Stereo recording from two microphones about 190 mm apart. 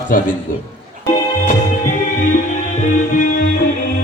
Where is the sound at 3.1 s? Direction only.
45° left (ahead or behind).